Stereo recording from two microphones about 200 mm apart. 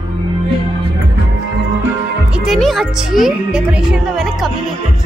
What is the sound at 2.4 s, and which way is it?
Speech, centre (ahead or behind).